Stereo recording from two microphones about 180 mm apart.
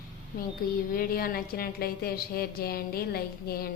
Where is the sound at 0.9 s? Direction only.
55° left (ahead or behind).